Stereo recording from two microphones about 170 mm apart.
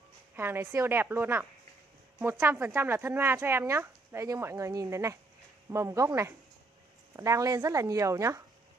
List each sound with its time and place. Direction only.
0.4 s speech: 15° right (ahead or behind)